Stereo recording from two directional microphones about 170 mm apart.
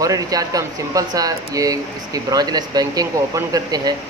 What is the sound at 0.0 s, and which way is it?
Speech, 20° right (ahead or behind).